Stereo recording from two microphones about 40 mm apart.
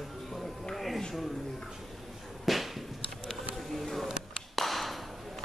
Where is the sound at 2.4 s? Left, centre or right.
Centre.